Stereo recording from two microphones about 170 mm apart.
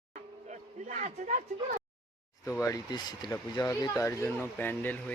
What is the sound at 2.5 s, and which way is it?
Speech, 20° left (ahead or behind).